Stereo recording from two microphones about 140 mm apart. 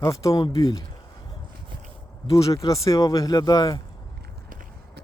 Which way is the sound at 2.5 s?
25° left (ahead or behind).